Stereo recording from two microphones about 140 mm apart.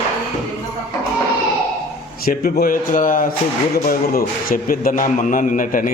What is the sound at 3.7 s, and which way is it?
A man's voice, 90° left.